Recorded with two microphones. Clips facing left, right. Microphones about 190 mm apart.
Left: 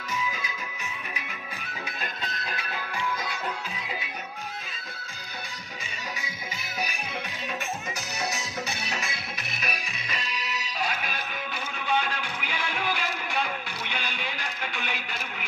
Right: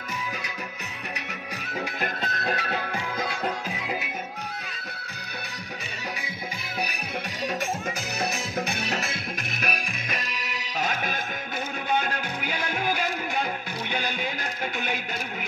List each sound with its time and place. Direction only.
0.3 s music: 65° right (ahead or behind)
2.0 s music: 65° right (ahead or behind)
8.2 s music: 55° right (ahead or behind)